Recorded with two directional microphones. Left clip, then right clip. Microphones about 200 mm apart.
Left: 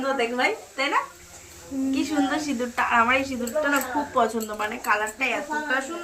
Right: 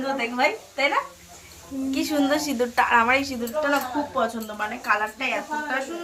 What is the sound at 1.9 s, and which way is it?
A woman's voice, 50° right (ahead or behind).